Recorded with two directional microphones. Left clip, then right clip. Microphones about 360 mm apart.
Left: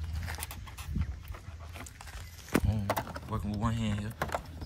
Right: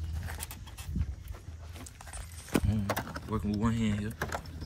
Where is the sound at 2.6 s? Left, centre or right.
Centre.